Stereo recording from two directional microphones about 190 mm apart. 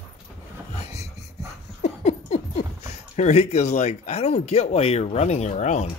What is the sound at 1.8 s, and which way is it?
Speech, 35° left (ahead or behind).